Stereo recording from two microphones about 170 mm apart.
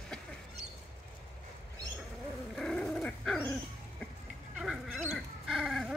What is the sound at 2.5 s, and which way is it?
Dog, 5° left (ahead or behind).